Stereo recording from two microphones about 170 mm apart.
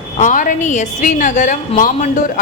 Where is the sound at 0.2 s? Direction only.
50° left (ahead or behind).